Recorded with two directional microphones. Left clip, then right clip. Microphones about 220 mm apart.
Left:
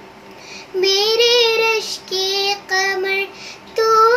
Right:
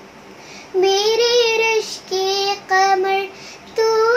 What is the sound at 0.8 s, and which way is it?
Child singing, 15° right (ahead or behind).